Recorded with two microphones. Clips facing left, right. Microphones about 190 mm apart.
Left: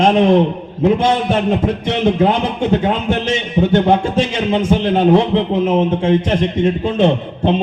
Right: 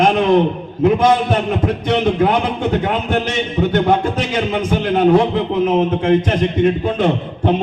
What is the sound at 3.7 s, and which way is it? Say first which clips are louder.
A man's voice: left 3 dB; 25° left (ahead or behind).